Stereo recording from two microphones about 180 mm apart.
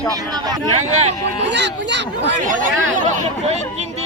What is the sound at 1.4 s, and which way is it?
Speech, 75° right (ahead or behind).